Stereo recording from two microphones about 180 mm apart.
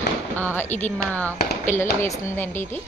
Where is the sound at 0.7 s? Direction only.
40° left (ahead or behind).